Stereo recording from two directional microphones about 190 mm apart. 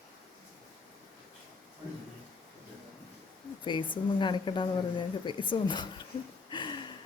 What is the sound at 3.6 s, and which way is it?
A woman's voice, 25° left (ahead or behind).